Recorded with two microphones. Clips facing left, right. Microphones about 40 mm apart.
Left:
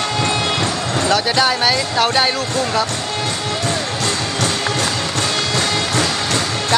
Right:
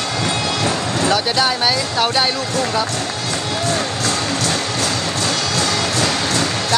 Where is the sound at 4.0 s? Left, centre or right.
Left.